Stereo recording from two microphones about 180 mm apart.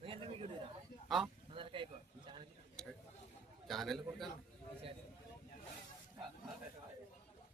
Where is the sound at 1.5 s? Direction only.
30° right (ahead or behind).